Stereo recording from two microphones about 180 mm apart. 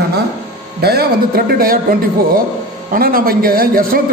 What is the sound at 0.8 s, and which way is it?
A man's voice, 60° right (ahead or behind).